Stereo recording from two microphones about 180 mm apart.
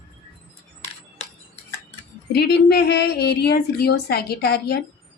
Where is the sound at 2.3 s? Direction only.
65° left (ahead or behind).